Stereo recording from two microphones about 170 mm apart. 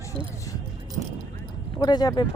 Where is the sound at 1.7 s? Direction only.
25° left (ahead or behind).